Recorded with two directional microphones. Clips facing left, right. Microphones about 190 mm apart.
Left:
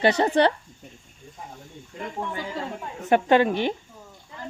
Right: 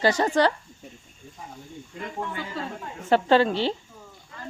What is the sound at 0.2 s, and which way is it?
Speech, 20° left (ahead or behind).